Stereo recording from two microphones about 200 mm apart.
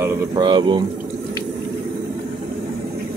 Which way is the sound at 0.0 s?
20° right (ahead or behind).